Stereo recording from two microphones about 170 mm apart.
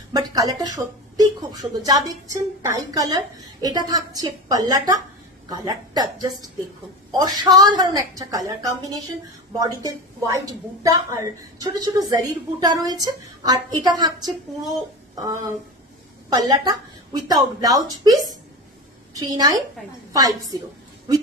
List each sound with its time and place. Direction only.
0.1 s speech: 20° right (ahead or behind)
16.3 s speech: 25° right (ahead or behind)